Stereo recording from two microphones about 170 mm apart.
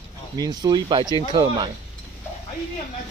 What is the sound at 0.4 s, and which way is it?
Speech, 25° right (ahead or behind).